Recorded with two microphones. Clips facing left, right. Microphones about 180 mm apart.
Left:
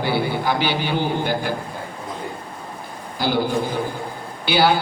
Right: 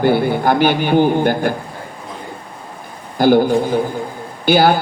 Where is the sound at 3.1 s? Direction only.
50° right (ahead or behind).